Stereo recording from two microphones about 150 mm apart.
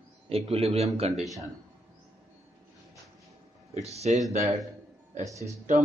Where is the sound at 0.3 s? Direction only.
40° right (ahead or behind).